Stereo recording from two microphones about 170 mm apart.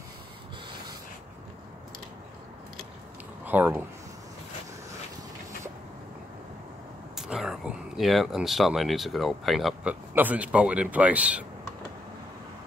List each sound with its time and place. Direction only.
3.4 s speech: 10° right (ahead or behind)
7.2 s a man's voice: 5° right (ahead or behind)